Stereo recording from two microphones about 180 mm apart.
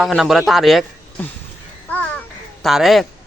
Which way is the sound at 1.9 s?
10° left (ahead or behind).